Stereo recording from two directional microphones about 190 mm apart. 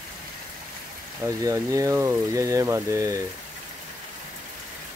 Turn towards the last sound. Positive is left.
turn(degrees=-15)  # may be behind; listen again after turning